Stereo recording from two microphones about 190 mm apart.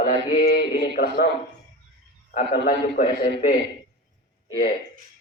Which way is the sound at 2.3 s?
50° left (ahead or behind).